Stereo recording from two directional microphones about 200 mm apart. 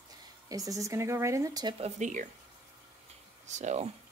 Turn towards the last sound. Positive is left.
turn(degrees=-35)  # may be behind; listen again after turning